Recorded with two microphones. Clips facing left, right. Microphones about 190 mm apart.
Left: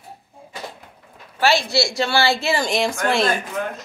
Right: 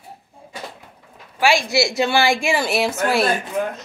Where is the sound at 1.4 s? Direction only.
15° right (ahead or behind).